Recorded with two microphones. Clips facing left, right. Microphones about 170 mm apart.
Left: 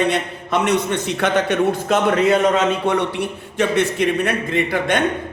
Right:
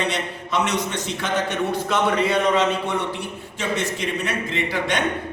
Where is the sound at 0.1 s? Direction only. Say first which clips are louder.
Left 5 dB; 55° left (ahead or behind).